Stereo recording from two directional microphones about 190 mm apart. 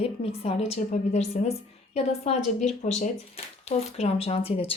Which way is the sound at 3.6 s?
35° left (ahead or behind).